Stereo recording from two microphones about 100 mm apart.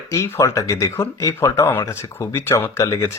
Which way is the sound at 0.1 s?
30° left (ahead or behind).